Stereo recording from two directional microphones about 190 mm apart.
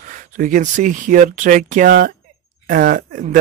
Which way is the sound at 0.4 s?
45° right (ahead or behind).